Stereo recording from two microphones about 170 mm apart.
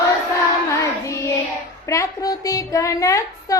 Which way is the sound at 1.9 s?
20° left (ahead or behind).